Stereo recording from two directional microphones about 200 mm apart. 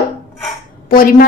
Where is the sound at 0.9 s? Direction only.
45° left (ahead or behind).